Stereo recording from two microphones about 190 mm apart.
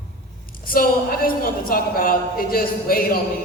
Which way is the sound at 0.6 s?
50° left (ahead or behind).